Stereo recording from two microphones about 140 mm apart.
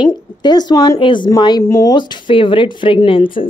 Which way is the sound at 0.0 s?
30° left (ahead or behind).